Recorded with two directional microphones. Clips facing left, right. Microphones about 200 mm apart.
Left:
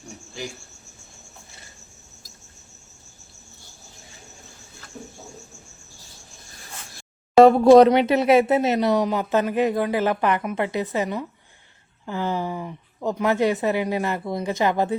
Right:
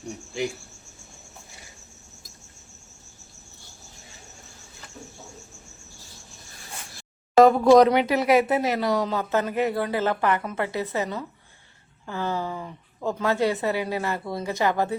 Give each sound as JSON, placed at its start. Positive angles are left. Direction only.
{"t": 7.4, "sound": "speech", "side_deg": 30}